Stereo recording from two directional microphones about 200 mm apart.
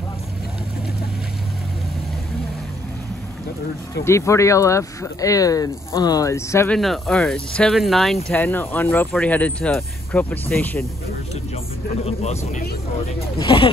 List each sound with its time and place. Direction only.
4.0 s speech: 15° left (ahead or behind)
6.8 s speech: centre (ahead or behind)
12.1 s speech: 35° left (ahead or behind)